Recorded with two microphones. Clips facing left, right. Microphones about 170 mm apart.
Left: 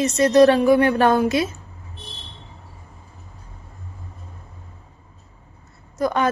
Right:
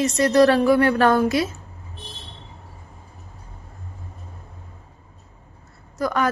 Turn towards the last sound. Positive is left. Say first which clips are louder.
# left 2 dB
turn(degrees=20)  # may be behind; listen again after turning